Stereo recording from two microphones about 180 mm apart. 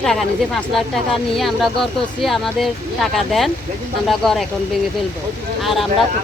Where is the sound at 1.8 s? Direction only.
Centre (ahead or behind).